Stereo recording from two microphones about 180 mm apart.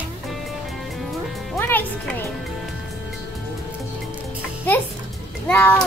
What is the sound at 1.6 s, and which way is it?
Speech, 10° left (ahead or behind).